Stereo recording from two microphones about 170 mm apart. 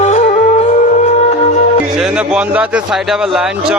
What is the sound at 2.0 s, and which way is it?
Speech, 5° right (ahead or behind).